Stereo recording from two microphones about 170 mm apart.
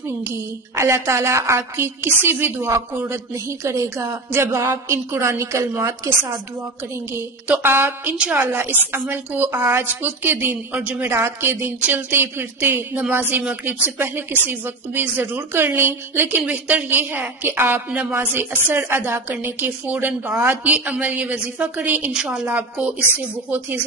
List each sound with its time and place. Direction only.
0.3 s a woman's voice: 15° right (ahead or behind)